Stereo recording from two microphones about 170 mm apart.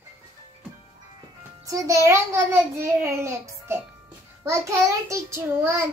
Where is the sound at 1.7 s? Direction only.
20° right (ahead or behind).